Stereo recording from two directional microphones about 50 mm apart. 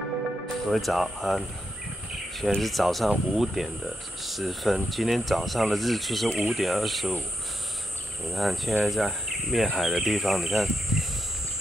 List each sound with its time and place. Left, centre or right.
0.7 s insect: centre
2.5 s insect: centre
8.3 s insect: centre